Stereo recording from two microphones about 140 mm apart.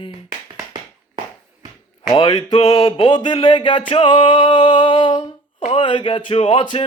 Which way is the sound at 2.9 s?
40° left (ahead or behind).